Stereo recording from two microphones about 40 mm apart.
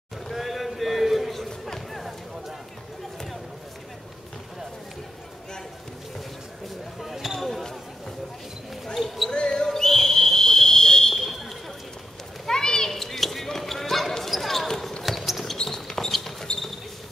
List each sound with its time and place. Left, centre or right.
0.3 s a sound: centre
7.0 s basketball bounce: centre
8.9 s basketball bounce: centre
9.5 s whistle: centre
11.1 s fire alarm: centre
12.4 s children playing: centre
14.7 s basketball bounce: centre
15.5 s a sound: centre